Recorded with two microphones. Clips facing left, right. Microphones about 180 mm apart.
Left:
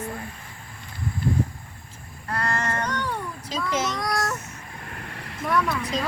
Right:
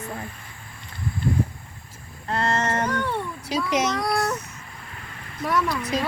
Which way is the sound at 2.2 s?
25° right (ahead or behind).